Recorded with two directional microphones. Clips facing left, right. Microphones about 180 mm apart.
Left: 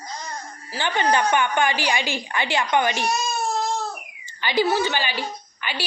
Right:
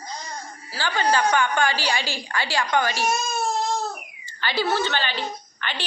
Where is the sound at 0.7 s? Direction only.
20° left (ahead or behind).